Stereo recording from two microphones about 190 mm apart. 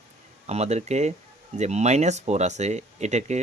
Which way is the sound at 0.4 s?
35° right (ahead or behind).